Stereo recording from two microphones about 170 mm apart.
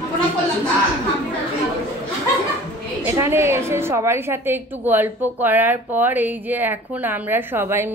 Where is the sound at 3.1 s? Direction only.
15° right (ahead or behind).